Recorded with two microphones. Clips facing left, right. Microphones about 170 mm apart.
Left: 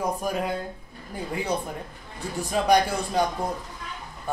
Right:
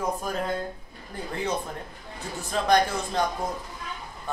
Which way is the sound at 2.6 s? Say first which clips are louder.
Left 1 dB; 10° left (ahead or behind).